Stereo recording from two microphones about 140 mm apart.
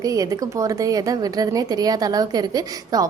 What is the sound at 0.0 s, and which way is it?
A woman's voice, 25° right (ahead or behind).